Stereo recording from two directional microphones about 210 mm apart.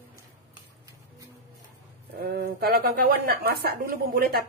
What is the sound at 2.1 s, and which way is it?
A woman's voice, 45° right (ahead or behind).